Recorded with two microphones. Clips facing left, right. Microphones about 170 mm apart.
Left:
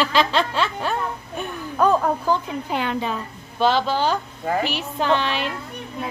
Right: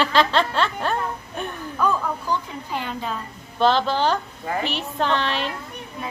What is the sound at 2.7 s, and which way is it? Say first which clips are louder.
Speech: left 4 dB; 75° left (ahead or behind).